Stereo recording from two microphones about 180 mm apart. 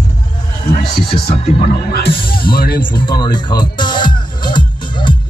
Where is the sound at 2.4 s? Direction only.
55° left (ahead or behind).